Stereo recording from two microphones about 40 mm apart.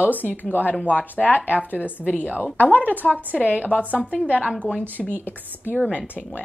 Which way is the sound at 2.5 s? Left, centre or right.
Left.